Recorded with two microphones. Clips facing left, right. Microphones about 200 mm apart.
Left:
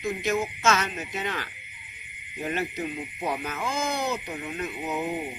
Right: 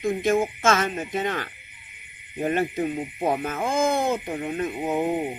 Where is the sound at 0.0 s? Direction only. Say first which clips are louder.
Right 5 dB; 50° right (ahead or behind).